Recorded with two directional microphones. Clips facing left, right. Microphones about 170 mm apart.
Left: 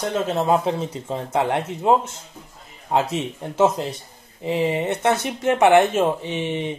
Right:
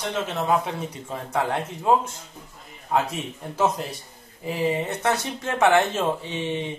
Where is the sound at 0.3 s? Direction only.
30° left (ahead or behind).